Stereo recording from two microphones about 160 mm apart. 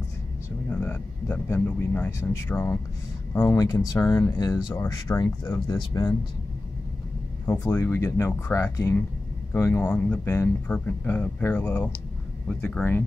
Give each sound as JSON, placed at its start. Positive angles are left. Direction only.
{"t": 0.7, "sound": "speech", "side_deg": 10}
{"t": 7.4, "sound": "speech", "side_deg": 15}